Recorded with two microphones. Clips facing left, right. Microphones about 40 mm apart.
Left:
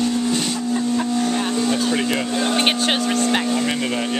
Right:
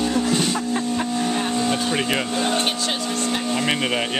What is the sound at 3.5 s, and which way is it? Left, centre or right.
Speech, right.